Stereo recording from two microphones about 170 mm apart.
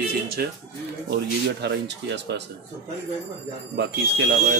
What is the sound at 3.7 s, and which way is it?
Speech, 90° right.